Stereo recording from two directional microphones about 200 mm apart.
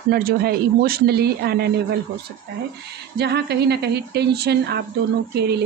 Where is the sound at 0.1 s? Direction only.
50° right (ahead or behind).